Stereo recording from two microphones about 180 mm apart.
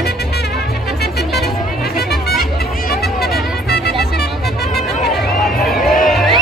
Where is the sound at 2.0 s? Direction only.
55° left (ahead or behind).